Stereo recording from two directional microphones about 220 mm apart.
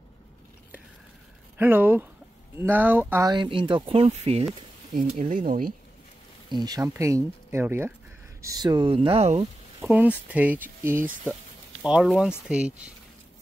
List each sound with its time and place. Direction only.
1.6 s speech: 10° right (ahead or behind); by 5.7 s 40° right (ahead or behind)
6.5 s speech: 20° right (ahead or behind)
9.8 s speech: 5° right (ahead or behind)